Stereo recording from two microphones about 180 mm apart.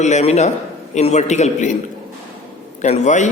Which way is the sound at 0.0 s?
40° left (ahead or behind).